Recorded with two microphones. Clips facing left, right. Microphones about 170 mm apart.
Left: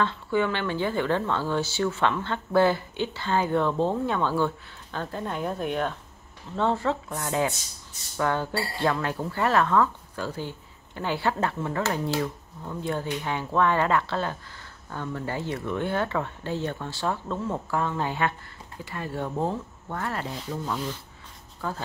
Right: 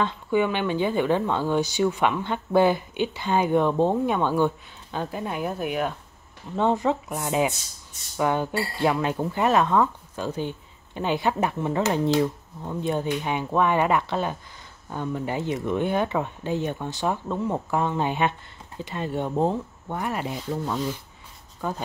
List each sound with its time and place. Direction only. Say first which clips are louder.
0.0 s speech: right 2 dB; 15° right (ahead or behind)